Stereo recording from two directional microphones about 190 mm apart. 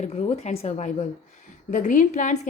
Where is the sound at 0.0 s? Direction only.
35° left (ahead or behind).